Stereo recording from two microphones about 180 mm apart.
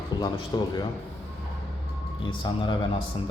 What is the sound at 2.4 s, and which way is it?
Speech, 30° left (ahead or behind).